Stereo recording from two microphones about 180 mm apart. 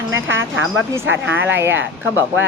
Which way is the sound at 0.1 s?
90° right.